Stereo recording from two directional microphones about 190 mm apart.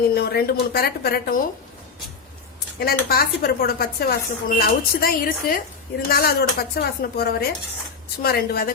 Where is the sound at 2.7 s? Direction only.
50° left (ahead or behind).